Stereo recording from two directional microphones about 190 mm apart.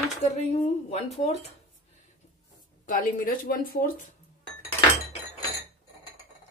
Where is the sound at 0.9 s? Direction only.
35° left (ahead or behind).